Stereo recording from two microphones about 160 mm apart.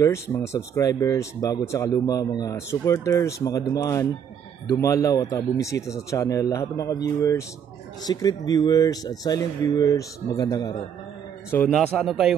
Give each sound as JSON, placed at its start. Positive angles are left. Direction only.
{"t": 0.0, "sound": "speech", "side_deg": 20}
{"t": 11.7, "sound": "speech", "side_deg": 0}